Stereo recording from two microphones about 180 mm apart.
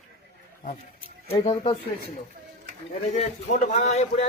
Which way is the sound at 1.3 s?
35° left (ahead or behind).